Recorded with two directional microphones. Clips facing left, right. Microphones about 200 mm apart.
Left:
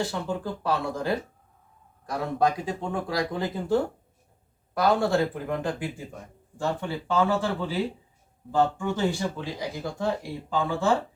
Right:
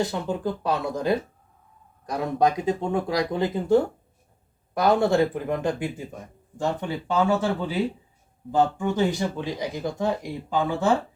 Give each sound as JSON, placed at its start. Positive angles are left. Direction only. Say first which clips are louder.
{"t": 0.0, "sound": "speech", "louder": "right 3 dB", "side_deg": -20}